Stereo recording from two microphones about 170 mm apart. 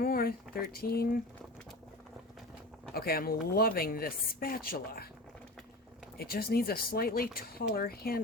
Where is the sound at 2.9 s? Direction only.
60° left (ahead or behind).